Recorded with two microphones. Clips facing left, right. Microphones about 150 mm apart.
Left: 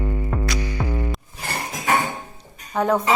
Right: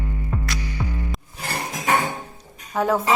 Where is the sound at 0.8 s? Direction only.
45° left (ahead or behind).